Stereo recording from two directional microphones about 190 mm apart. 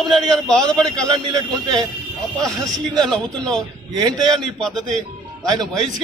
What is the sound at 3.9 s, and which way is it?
Speech, 20° right (ahead or behind).